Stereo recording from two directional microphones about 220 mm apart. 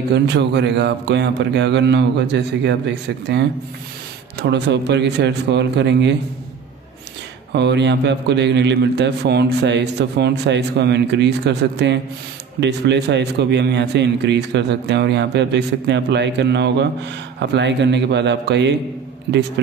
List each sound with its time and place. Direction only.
0.1 s a man's voice: 50° right (ahead or behind)
4.4 s a man's voice: 50° right (ahead or behind)
7.5 s a man's voice: 50° right (ahead or behind)